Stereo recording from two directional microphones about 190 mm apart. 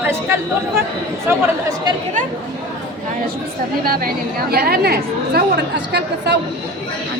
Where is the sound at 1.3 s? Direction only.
10° right (ahead or behind).